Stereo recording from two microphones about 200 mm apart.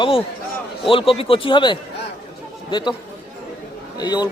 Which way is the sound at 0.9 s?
25° left (ahead or behind).